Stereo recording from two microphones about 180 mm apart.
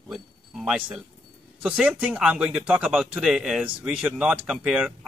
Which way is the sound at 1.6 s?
5° right (ahead or behind).